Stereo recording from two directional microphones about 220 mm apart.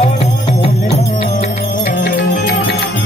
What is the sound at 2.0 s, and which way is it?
Music, 45° left (ahead or behind).